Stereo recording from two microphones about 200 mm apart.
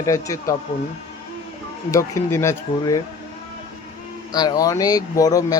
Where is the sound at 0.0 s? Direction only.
15° left (ahead or behind).